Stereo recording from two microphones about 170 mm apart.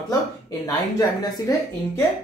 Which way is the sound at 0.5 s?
20° left (ahead or behind).